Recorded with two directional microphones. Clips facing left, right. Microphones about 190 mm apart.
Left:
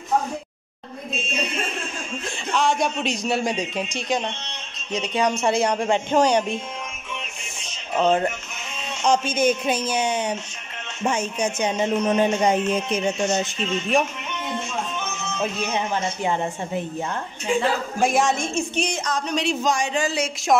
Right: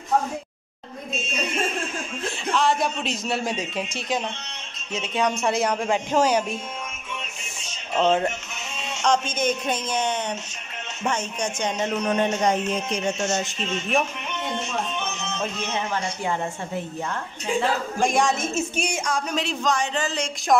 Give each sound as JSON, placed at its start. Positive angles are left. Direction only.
{"t": 2.5, "sound": "a man's voice", "side_deg": 0}
{"t": 7.9, "sound": "a man's voice", "side_deg": 5}
{"t": 15.6, "sound": "speech", "side_deg": 20}
{"t": 18.0, "sound": "a man's voice", "side_deg": 0}
{"t": 19.4, "sound": "speech", "side_deg": 10}